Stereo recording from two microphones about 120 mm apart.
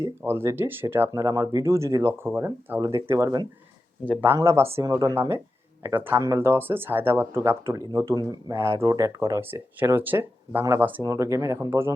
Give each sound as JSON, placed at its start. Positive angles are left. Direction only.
{"t": 0.0, "sound": "speech", "side_deg": -20}
{"t": 4.0, "sound": "speech", "side_deg": -15}
{"t": 11.0, "sound": "speech", "side_deg": -25}